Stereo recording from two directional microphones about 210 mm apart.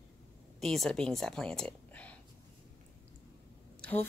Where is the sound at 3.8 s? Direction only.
5° left (ahead or behind).